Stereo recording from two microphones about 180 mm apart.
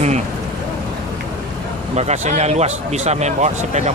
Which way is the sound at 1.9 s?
40° right (ahead or behind).